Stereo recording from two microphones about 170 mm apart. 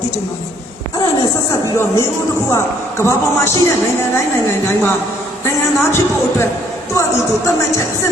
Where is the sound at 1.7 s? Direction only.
15° left (ahead or behind).